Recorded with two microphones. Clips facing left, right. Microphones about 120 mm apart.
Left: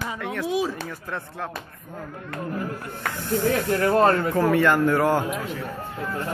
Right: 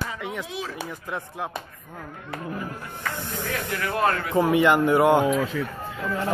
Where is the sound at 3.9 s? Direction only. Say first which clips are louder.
Left 5 dB; 35° left (ahead or behind).